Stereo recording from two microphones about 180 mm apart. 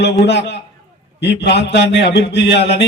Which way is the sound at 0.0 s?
75° left (ahead or behind).